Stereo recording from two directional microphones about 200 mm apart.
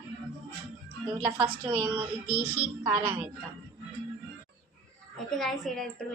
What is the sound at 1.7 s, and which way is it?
Speech, 5° right (ahead or behind).